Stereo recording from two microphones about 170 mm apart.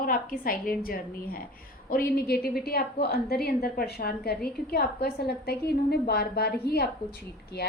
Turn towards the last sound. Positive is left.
turn(degrees=70)  # may be behind; listen again after turning